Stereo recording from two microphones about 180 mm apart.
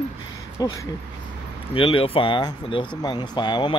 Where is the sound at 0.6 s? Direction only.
20° left (ahead or behind).